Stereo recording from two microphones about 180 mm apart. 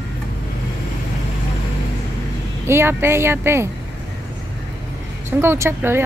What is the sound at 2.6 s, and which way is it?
Speech, 15° right (ahead or behind).